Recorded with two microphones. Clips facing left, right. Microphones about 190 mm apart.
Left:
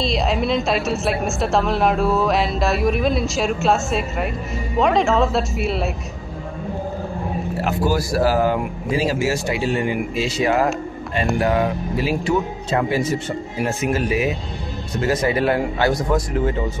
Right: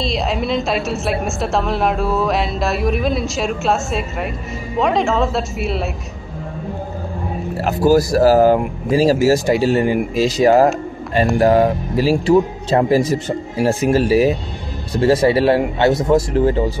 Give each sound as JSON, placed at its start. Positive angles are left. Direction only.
{"t": 0.0, "sound": "a woman's voice", "side_deg": 0}
{"t": 7.6, "sound": "speech", "side_deg": -40}